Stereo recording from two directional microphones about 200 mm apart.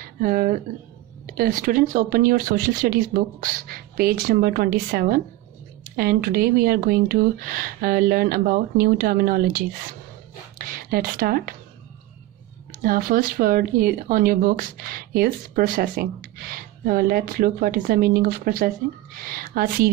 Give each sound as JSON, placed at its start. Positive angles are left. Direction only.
{"t": 0.0, "sound": "speech", "side_deg": -45}
{"t": 12.8, "sound": "speech", "side_deg": -45}